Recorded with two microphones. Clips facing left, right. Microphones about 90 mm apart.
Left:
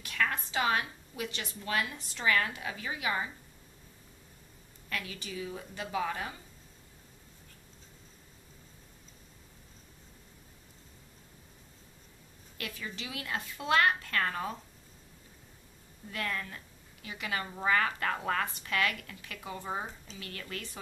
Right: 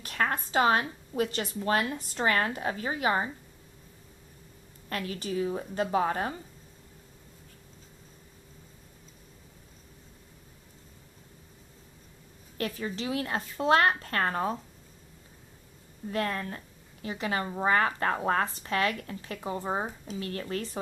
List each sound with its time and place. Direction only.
0.0 s speech: 40° right (ahead or behind)
4.8 s speech: 40° right (ahead or behind)
12.5 s speech: 40° right (ahead or behind)
16.1 s speech: 35° right (ahead or behind)